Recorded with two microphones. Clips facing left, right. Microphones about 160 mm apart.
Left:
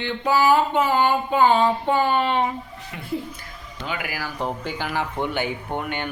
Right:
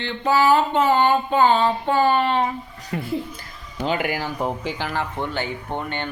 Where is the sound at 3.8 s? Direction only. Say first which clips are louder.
Right 7 dB; 30° right (ahead or behind).